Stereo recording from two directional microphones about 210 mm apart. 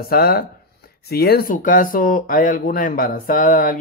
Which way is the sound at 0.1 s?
45° left (ahead or behind).